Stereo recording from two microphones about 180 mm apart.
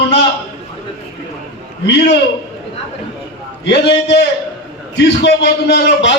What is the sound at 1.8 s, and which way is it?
Speech, 75° left (ahead or behind).